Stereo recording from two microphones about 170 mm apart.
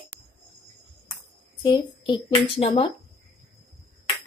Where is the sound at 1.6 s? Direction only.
25° left (ahead or behind).